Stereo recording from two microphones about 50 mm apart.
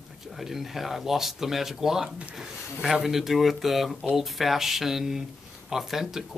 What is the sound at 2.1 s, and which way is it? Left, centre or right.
Speech, right.